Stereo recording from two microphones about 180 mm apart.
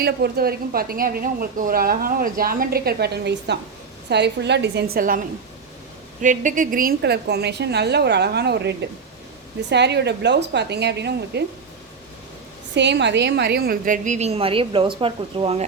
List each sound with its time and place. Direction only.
0.0 s a woman's voice: 60° right (ahead or behind)
6.2 s a woman's voice: 45° right (ahead or behind); by 11.4 s 70° right (ahead or behind)
12.7 s a woman's voice: 75° right (ahead or behind); by 15.6 s 30° right (ahead or behind)